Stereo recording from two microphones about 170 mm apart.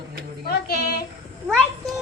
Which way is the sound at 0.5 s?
60° left (ahead or behind).